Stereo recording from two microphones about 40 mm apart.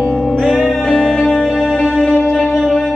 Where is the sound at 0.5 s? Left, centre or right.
Centre.